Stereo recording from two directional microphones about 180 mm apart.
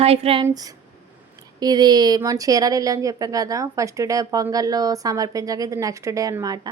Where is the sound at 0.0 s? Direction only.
35° right (ahead or behind).